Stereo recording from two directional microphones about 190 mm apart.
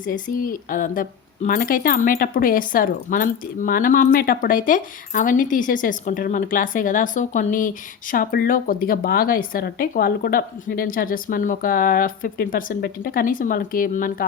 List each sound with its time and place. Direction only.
0.0 s a woman's voice: 45° left (ahead or behind)